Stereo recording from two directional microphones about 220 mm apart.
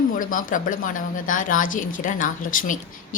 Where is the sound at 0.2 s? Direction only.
40° left (ahead or behind).